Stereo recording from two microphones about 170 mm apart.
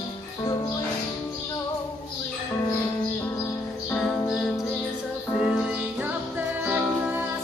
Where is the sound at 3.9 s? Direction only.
5° left (ahead or behind).